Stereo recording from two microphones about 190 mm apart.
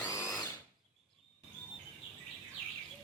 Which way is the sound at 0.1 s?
15° left (ahead or behind).